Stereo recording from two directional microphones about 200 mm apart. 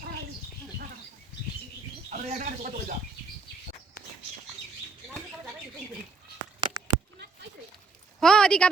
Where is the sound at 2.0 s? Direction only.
40° right (ahead or behind).